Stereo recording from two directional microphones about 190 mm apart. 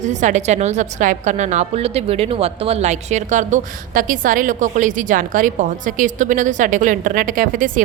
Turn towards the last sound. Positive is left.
turn(degrees=-45)  # may be behind; listen again after turning